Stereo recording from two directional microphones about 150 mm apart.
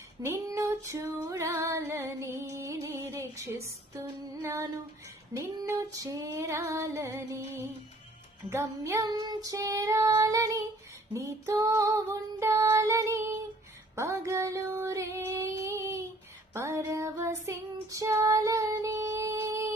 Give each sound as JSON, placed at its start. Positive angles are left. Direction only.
{"t": 0.2, "sound": "female singing", "side_deg": -20}
{"t": 16.6, "sound": "child singing", "side_deg": -20}